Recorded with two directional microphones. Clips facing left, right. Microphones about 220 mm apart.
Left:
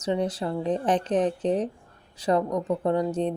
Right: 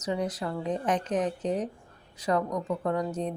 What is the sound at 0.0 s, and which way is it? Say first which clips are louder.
Speech: left 4 dB; 30° left (ahead or behind).